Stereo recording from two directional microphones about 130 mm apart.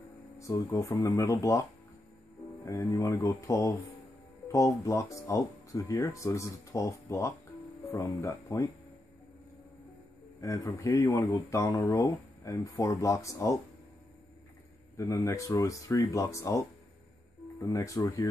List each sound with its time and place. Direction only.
0.4 s speech: 25° left (ahead or behind)
2.6 s speech: 25° left (ahead or behind)
10.4 s speech: 25° left (ahead or behind)
15.0 s speech: 25° left (ahead or behind)
17.6 s speech: 25° left (ahead or behind)